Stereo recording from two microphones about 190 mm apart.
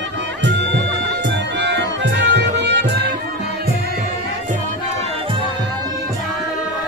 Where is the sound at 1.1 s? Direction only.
65° right (ahead or behind).